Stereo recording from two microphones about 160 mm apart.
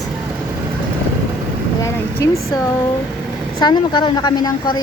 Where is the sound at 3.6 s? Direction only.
30° left (ahead or behind).